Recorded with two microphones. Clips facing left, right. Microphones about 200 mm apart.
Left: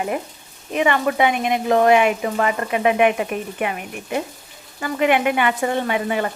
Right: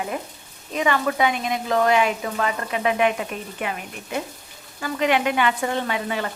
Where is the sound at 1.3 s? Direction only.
55° left (ahead or behind).